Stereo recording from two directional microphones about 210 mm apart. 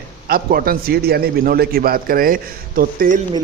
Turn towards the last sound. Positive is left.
turn(degrees=-40)  # may be behind; listen again after turning